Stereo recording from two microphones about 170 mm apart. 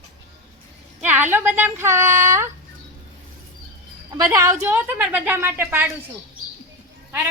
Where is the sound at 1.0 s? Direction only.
10° right (ahead or behind).